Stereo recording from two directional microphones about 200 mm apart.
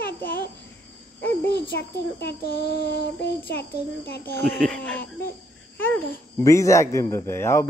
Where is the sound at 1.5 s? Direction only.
50° left (ahead or behind).